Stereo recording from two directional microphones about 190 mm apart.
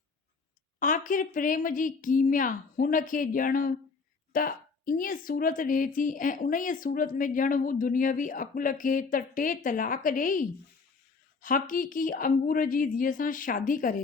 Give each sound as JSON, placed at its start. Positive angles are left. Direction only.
{"t": 0.8, "sound": "a woman's voice", "side_deg": 45}